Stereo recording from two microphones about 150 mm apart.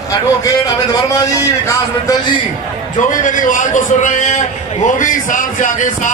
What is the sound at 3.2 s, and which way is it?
A man's voice, 60° left (ahead or behind).